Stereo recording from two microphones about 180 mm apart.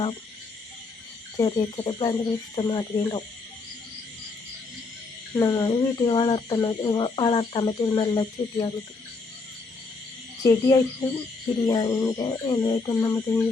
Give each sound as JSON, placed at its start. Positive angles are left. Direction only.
{"t": 1.4, "sound": "speech", "side_deg": 25}
{"t": 5.3, "sound": "speech", "side_deg": 20}
{"t": 10.4, "sound": "speech", "side_deg": 20}